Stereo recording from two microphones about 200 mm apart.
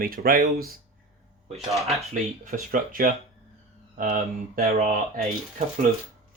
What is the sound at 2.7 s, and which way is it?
Speech, 45° right (ahead or behind).